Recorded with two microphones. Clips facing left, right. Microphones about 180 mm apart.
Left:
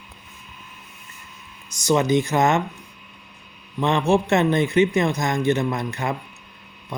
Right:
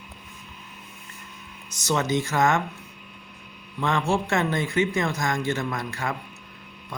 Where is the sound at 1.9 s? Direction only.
15° left (ahead or behind).